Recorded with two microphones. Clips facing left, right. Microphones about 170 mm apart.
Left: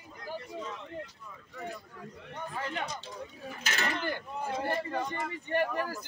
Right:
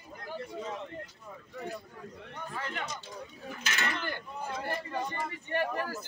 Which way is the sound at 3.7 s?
40° left (ahead or behind).